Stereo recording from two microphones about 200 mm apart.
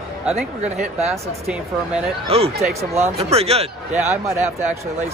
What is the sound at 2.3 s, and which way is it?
A man's voice, 30° right (ahead or behind).